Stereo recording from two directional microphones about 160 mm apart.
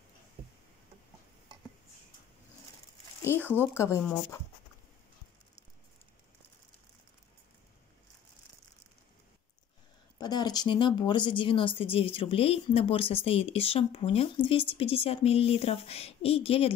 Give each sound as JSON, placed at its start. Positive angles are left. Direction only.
{"t": 3.2, "sound": "speech", "side_deg": 15}
{"t": 10.1, "sound": "speech", "side_deg": 25}